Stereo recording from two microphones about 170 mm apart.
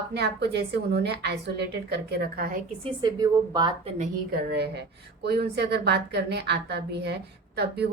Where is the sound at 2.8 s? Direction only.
25° right (ahead or behind).